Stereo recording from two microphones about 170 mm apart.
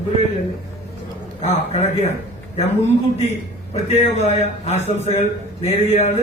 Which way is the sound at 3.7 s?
40° left (ahead or behind).